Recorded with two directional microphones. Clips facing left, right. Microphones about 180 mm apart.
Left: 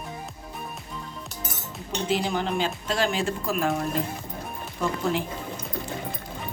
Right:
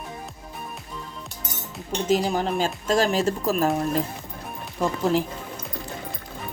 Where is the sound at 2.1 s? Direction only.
40° right (ahead or behind).